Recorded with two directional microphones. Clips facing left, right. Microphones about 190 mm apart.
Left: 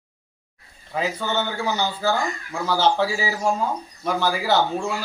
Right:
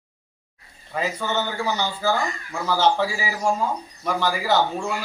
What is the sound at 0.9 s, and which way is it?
Speech, 5° left (ahead or behind).